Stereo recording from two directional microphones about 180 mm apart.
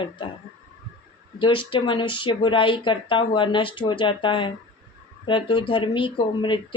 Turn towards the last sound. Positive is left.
turn(degrees=25)  # may be behind; listen again after turning